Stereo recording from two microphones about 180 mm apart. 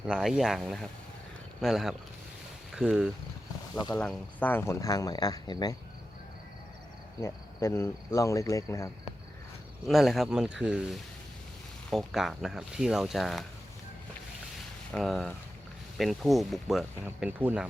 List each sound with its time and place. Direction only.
0.1 s speech: centre (ahead or behind); by 5.7 s 20° left (ahead or behind)
7.2 s speech: 15° left (ahead or behind)
9.8 s speech: centre (ahead or behind)
14.9 s speech: centre (ahead or behind)